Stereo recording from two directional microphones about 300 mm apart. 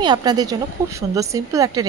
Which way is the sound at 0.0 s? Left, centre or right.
Centre.